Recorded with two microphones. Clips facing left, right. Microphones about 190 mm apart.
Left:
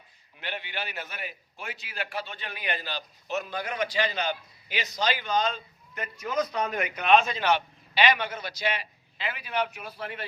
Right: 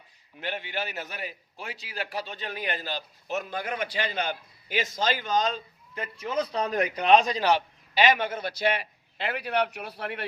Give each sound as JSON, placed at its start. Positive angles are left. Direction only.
{"t": 0.3, "sound": "a man's voice", "side_deg": -45}